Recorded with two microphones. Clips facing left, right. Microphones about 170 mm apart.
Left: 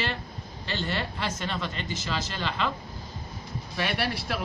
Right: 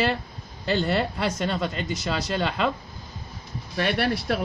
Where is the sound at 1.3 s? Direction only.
40° right (ahead or behind).